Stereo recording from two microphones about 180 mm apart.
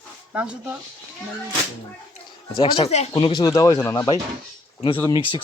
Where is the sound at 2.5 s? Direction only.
30° left (ahead or behind).